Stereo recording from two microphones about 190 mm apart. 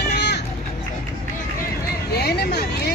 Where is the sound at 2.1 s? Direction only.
55° left (ahead or behind).